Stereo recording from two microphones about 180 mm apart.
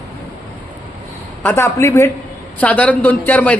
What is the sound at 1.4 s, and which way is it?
A man's voice, 15° left (ahead or behind).